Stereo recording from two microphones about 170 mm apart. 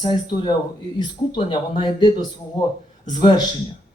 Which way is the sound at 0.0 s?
25° left (ahead or behind).